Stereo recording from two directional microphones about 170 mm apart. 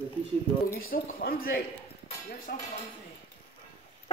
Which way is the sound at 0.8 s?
60° left (ahead or behind).